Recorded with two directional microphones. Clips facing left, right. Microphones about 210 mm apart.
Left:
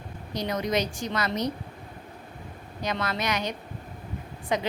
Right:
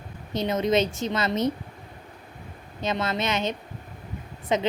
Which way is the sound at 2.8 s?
25° right (ahead or behind).